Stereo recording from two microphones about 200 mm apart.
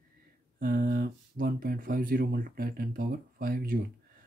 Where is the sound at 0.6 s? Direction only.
45° right (ahead or behind).